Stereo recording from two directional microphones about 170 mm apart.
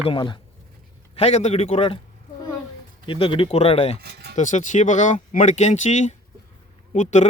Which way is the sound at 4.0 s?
65° right (ahead or behind).